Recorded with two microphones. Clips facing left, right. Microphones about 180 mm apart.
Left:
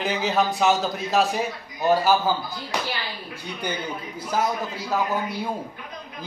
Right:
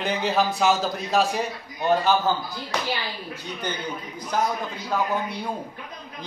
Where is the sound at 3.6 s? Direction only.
10° left (ahead or behind).